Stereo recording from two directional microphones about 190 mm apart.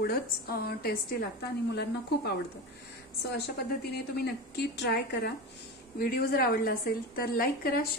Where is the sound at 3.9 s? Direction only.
60° left (ahead or behind).